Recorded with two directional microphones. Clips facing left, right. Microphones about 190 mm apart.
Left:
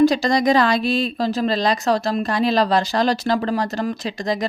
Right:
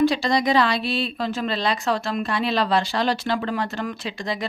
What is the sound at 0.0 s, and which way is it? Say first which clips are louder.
Speech: left 4 dB; 45° left (ahead or behind).